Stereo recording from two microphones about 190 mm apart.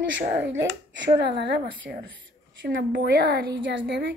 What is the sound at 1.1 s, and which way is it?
A woman's voice, 65° right (ahead or behind).